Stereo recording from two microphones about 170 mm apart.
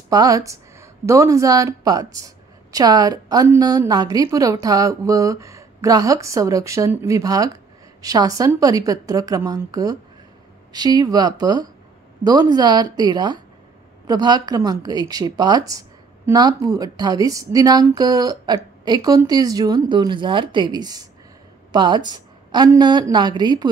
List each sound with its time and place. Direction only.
0.1 s a woman's voice: 20° right (ahead or behind)